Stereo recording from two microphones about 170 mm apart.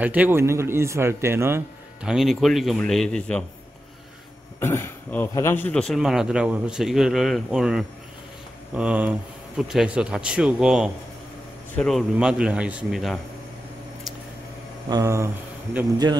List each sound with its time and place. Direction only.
0.0 s a man's voice: 10° right (ahead or behind)
2.0 s speech: centre (ahead or behind)
4.6 s a man's voice: 15° left (ahead or behind); by 13.2 s centre (ahead or behind)
14.9 s speech: 20° right (ahead or behind)